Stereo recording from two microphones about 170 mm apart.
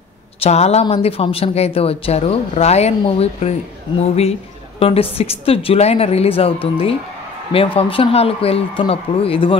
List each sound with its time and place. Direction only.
0.4 s speech: 40° left (ahead or behind)